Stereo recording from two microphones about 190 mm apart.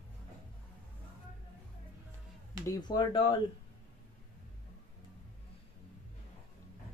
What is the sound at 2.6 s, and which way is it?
Speech, 20° left (ahead or behind).